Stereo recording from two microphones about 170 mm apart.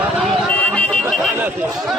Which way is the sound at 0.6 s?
10° left (ahead or behind).